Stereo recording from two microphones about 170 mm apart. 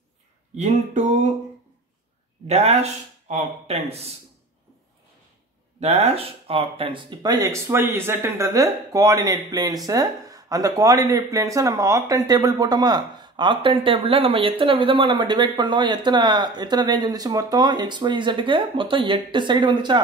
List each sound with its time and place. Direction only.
0.6 s a sound: 45° right (ahead or behind)
2.4 s speech: 40° right (ahead or behind)
5.8 s speech: 40° right (ahead or behind)